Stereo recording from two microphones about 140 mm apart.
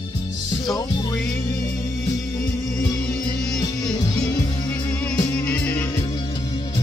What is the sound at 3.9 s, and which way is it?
Music, 30° left (ahead or behind).